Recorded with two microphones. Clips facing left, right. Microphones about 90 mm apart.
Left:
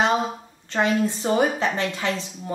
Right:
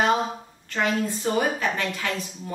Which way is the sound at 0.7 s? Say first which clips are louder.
Left 3 dB; 25° left (ahead or behind).